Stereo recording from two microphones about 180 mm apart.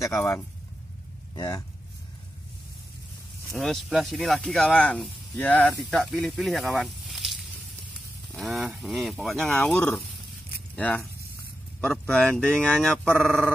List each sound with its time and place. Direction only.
0.0 s speech: 15° left (ahead or behind)
1.3 s speech: 25° left (ahead or behind)
3.4 s speech: centre (ahead or behind)